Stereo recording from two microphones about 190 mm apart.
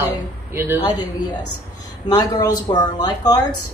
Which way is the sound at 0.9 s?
20° left (ahead or behind).